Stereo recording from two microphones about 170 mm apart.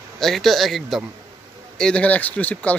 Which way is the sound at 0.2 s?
Centre (ahead or behind).